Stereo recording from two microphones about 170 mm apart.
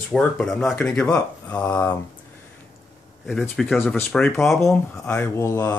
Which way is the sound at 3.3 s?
Centre (ahead or behind).